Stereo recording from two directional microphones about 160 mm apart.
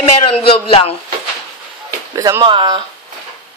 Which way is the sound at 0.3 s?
35° left (ahead or behind).